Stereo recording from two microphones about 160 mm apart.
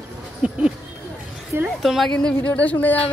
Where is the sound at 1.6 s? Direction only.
Centre (ahead or behind).